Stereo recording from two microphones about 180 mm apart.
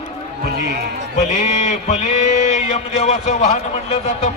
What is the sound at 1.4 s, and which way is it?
Speech, 40° left (ahead or behind).